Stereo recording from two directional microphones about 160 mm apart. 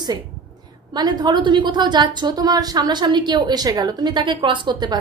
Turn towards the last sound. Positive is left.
turn(degrees=-30)  # may be behind; listen again after turning